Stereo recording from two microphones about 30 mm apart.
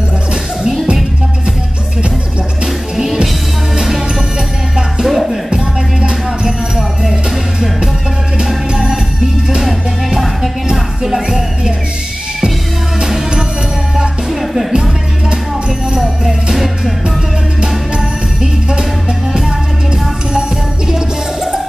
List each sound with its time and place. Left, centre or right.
2.6 s music: centre
5.0 s music: centre
5.5 s music: right
7.0 s music: centre
9.6 s music: centre
14.4 s music: centre
16.5 s music: centre
18.4 s music: right
20.3 s music: right